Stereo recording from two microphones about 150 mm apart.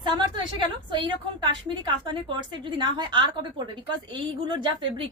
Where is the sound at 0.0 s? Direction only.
30° right (ahead or behind).